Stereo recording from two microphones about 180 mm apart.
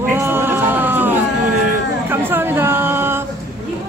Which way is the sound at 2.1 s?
10° right (ahead or behind).